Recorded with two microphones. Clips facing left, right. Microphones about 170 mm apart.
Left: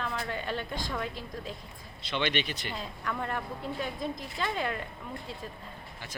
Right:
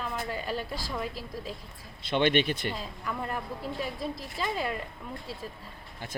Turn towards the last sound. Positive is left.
turn(degrees=-5)  # may be behind; listen again after turning